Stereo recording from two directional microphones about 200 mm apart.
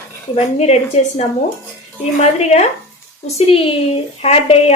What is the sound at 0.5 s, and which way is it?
Speech, 35° left (ahead or behind).